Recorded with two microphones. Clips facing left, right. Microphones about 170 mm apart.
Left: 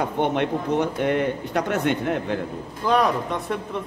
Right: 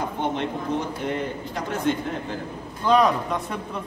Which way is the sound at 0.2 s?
65° left (ahead or behind).